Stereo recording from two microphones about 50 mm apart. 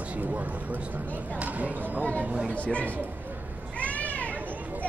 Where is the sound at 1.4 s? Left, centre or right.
Right.